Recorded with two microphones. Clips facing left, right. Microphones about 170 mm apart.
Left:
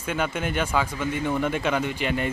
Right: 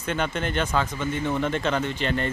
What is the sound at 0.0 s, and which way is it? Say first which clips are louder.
Speech: even; 10° left (ahead or behind).